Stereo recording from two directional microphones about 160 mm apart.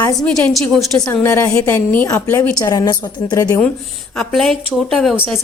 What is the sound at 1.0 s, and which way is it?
A woman's voice, 20° left (ahead or behind).